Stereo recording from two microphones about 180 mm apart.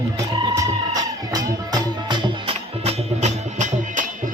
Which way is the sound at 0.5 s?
20° right (ahead or behind).